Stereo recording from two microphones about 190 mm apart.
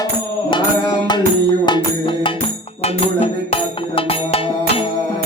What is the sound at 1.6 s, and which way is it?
Music, 25° left (ahead or behind).